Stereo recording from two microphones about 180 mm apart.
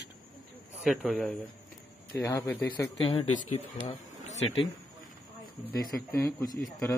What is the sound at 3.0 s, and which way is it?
Speech, 30° left (ahead or behind).